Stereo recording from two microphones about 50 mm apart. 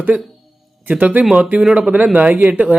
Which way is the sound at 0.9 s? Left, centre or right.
Right.